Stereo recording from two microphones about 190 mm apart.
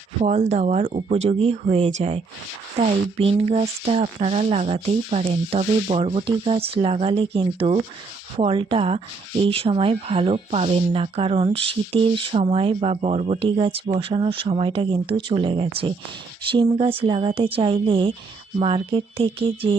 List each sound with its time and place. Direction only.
0.2 s speech: 35° right (ahead or behind)